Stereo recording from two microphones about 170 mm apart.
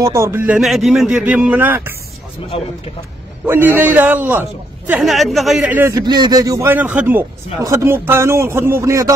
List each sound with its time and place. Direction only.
0.0 s a man's voice: 15° right (ahead or behind)
0.6 s speech: centre (ahead or behind)
2.5 s speech: 35° left (ahead or behind)
3.4 s a man's voice: 10° right (ahead or behind)